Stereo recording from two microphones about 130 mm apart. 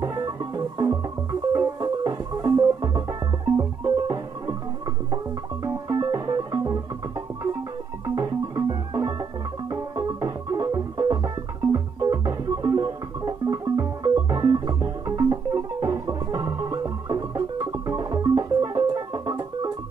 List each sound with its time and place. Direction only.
0.0 s music: 30° right (ahead or behind)